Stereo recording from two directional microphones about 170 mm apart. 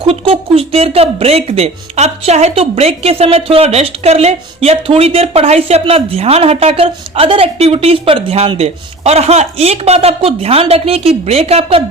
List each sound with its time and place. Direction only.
0.0 s speech: 35° right (ahead or behind)